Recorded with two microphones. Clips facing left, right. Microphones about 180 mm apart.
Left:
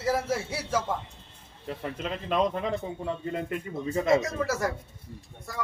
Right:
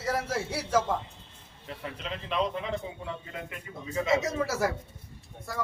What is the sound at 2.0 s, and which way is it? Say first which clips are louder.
A man's voice: left 4 dB; 45° left (ahead or behind).